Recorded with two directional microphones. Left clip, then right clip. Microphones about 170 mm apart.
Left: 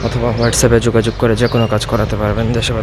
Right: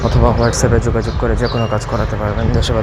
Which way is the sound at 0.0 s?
Centre (ahead or behind).